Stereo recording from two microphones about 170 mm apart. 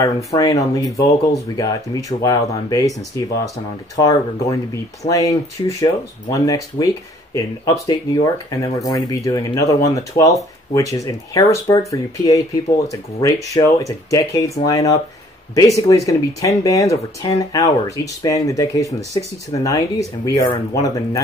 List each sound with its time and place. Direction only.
0.0 s speech: 20° left (ahead or behind)